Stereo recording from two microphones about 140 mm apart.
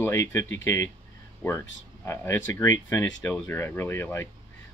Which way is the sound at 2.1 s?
20° left (ahead or behind).